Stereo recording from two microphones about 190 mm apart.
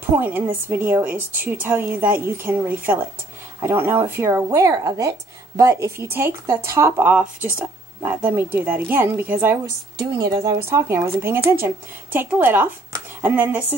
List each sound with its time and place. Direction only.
0.1 s speech: 10° right (ahead or behind)